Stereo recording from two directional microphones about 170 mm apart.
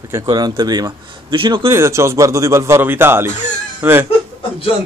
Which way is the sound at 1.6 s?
15° right (ahead or behind).